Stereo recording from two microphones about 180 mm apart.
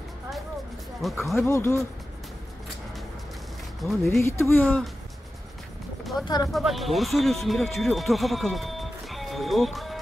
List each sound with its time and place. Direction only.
1.2 s speech: centre (ahead or behind)
1.5 s speech: 15° left (ahead or behind)
3.8 s speech: centre (ahead or behind)
4.2 s speech: 15° left (ahead or behind)
6.2 s speech: 20° left (ahead or behind)
6.5 s speech: centre (ahead or behind)